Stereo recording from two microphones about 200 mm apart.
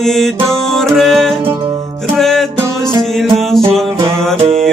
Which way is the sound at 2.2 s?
Centre (ahead or behind).